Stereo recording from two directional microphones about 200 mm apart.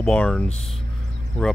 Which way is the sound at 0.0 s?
5° left (ahead or behind).